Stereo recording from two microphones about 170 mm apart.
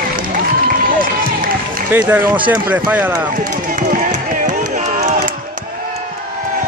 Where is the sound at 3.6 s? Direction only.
50° right (ahead or behind).